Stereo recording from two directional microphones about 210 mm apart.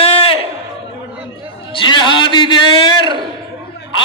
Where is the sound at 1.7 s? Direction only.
25° left (ahead or behind).